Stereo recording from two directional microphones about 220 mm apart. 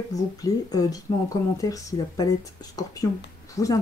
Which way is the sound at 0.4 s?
15° left (ahead or behind).